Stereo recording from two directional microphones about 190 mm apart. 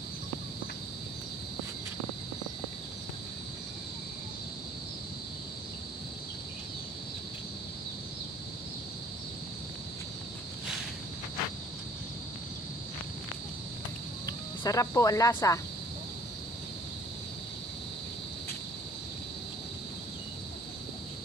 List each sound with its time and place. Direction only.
14.2 s speech: 20° left (ahead or behind)